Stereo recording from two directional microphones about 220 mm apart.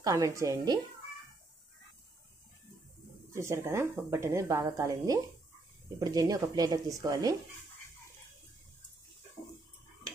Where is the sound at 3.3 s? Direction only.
10° right (ahead or behind).